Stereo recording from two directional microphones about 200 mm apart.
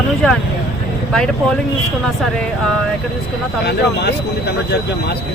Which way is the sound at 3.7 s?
55° left (ahead or behind).